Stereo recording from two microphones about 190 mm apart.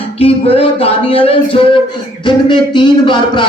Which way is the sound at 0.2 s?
30° left (ahead or behind).